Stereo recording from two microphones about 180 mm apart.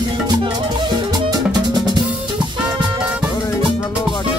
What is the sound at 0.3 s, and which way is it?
Music, 25° right (ahead or behind).